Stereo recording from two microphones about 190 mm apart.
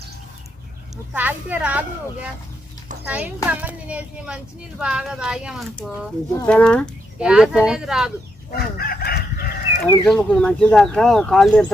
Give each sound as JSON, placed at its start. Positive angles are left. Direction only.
{"t": 1.1, "sound": "a child's voice", "side_deg": -10}
{"t": 3.1, "sound": "a child's voice", "side_deg": -5}
{"t": 8.4, "sound": "chicken", "side_deg": 55}
{"t": 9.8, "sound": "speech", "side_deg": 5}